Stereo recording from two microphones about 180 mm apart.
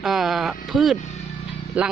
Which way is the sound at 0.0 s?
Centre (ahead or behind).